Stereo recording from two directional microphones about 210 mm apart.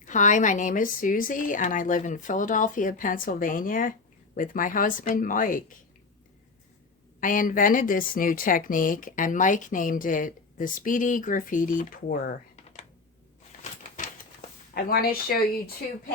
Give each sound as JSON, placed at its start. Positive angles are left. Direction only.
{"t": 0.0, "sound": "a woman's voice", "side_deg": 35}
{"t": 7.2, "sound": "a woman's voice", "side_deg": 40}
{"t": 13.5, "sound": "typewriter", "side_deg": 40}
{"t": 14.8, "sound": "speech", "side_deg": 45}